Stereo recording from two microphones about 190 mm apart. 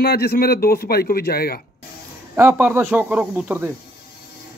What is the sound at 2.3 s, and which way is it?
Speech, 10° right (ahead or behind).